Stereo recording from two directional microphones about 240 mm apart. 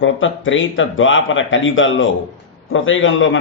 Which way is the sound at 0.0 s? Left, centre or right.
Left.